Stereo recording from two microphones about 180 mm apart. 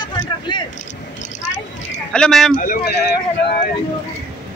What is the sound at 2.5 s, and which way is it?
Speech, 55° left (ahead or behind).